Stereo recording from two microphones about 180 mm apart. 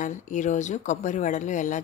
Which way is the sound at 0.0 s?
45° left (ahead or behind).